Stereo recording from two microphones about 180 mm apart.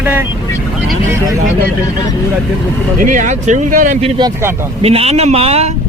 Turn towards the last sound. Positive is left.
turn(degrees=-35)  # may be behind; listen again after turning